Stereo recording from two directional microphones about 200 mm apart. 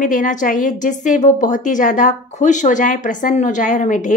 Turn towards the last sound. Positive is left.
turn(degrees=40)  # may be behind; listen again after turning